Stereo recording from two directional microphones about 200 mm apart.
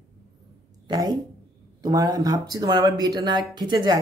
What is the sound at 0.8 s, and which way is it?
A woman's voice, 20° right (ahead or behind).